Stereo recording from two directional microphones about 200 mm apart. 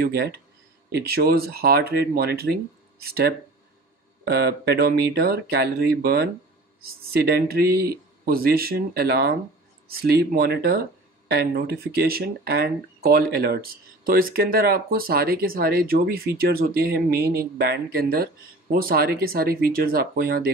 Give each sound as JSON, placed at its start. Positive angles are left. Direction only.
{"t": 0.0, "sound": "speech", "side_deg": -50}